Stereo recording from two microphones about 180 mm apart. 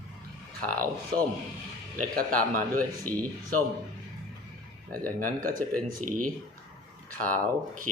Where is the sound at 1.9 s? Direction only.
50° right (ahead or behind).